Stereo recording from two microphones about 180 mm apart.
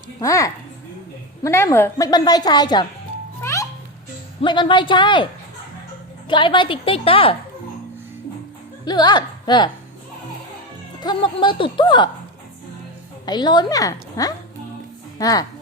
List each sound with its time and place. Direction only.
0.2 s a woman's voice: 20° left (ahead or behind)
3.4 s music: 15° left (ahead or behind)
4.4 s a woman's voice: 25° left (ahead or behind)
8.8 s speech: 25° left (ahead or behind)
11.0 s a woman's voice: 25° left (ahead or behind)
13.2 s a woman's voice: 25° left (ahead or behind)